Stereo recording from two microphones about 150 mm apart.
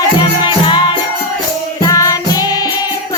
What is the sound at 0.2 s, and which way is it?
Music, 30° left (ahead or behind).